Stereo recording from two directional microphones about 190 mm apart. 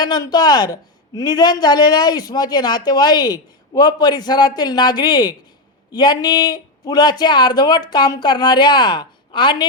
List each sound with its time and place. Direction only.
0.0 s a man's voice: 20° left (ahead or behind)